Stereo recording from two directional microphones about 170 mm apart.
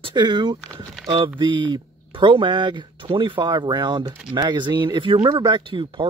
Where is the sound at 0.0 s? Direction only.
25° right (ahead or behind).